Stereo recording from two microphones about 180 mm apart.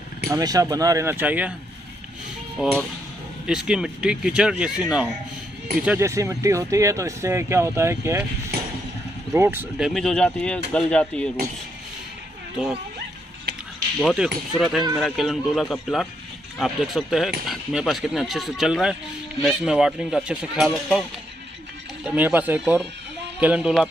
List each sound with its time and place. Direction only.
0.3 s speech: 20° right (ahead or behind)
2.6 s speech: 5° right (ahead or behind)
9.3 s speech: 15° right (ahead or behind); by 11.3 s 5° left (ahead or behind)
13.9 s speech: centre (ahead or behind)
22.0 s speech: 10° right (ahead or behind)